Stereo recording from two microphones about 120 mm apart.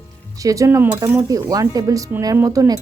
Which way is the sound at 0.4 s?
25° right (ahead or behind).